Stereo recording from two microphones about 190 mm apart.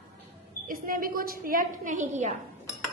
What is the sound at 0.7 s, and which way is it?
A woman's voice, 50° right (ahead or behind).